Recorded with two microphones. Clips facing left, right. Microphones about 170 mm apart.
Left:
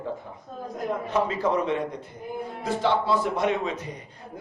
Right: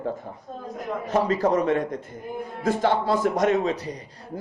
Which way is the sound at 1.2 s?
40° right (ahead or behind).